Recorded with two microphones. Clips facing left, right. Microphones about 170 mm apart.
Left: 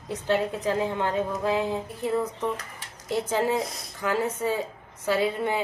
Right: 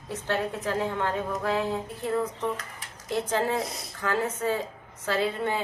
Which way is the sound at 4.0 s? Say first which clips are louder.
Left 2 dB; 10° left (ahead or behind).